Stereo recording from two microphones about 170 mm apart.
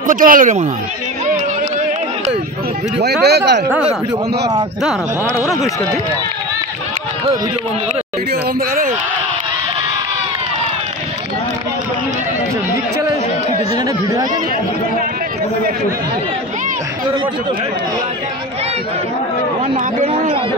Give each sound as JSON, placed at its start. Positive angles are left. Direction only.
{"t": 0.0, "sound": "speech", "side_deg": -50}
{"t": 3.0, "sound": "speech", "side_deg": -75}
{"t": 8.3, "sound": "speech", "side_deg": -60}
{"t": 19.7, "sound": "speech", "side_deg": -35}